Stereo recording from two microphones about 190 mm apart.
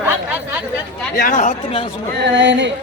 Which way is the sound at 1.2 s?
40° left (ahead or behind).